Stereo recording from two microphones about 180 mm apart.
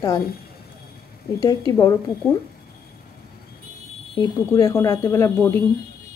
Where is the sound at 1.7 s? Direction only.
15° left (ahead or behind).